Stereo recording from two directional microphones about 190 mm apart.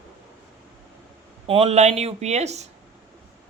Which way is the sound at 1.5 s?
30° right (ahead or behind).